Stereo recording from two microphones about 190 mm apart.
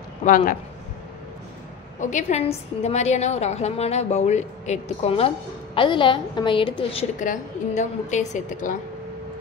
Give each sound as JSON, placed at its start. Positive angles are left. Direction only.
{"t": 0.2, "sound": "a man's voice", "side_deg": 45}
{"t": 2.0, "sound": "a woman's voice", "side_deg": 40}
{"t": 7.2, "sound": "a woman's voice", "side_deg": 40}